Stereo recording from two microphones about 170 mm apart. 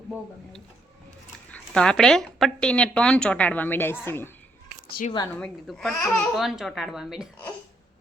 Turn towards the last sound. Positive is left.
turn(degrees=-5)  # may be behind; listen again after turning